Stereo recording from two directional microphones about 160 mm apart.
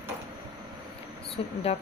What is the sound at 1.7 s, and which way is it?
Speech, 40° left (ahead or behind).